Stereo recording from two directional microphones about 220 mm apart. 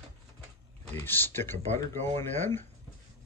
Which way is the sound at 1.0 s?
10° left (ahead or behind).